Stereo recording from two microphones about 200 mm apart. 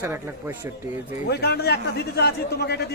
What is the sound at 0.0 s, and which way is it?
A man's voice, 15° right (ahead or behind).